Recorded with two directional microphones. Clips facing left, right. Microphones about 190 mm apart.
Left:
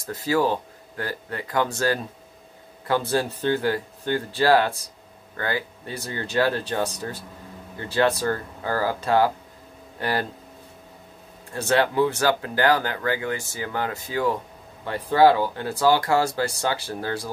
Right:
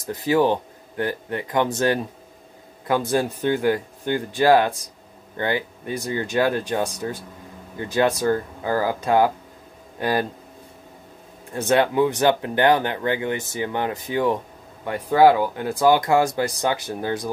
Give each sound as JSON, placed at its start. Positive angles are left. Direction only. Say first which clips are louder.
{"t": 0.0, "sound": "speech", "louder": "right 3 dB", "side_deg": -20}
{"t": 3.1, "sound": "speech", "louder": "right 2 dB", "side_deg": -15}
{"t": 11.6, "sound": "speech", "louder": "right 2 dB", "side_deg": -20}